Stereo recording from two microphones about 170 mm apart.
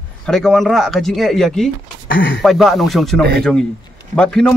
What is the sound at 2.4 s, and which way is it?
A man's voice, centre (ahead or behind).